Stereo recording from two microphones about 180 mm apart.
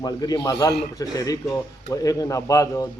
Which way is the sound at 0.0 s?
20° left (ahead or behind).